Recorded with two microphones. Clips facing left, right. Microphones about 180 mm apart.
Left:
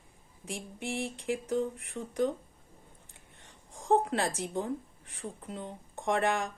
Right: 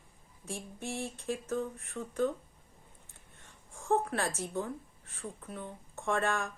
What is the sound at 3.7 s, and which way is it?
A woman's voice, 15° left (ahead or behind).